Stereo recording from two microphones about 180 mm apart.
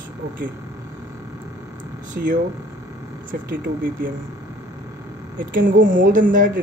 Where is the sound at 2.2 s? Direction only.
60° right (ahead or behind).